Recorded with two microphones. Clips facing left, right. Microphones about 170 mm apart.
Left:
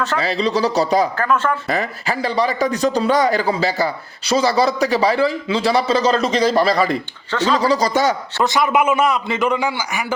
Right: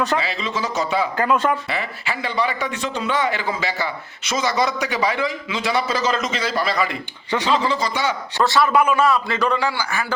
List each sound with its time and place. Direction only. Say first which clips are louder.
0.2 s speech: left 7 dB; 40° left (ahead or behind)
1.2 s speech: even; 15° right (ahead or behind)
1.7 s speech: left 5 dB; 40° left (ahead or behind)
7.3 s speech: left 2 dB; 15° right (ahead or behind)
7.5 s speech: left 6 dB; 40° left (ahead or behind)
8.4 s a man's voice: right 1 dB; 15° left (ahead or behind)